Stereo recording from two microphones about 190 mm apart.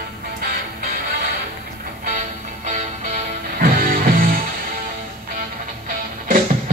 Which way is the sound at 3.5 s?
50° right (ahead or behind).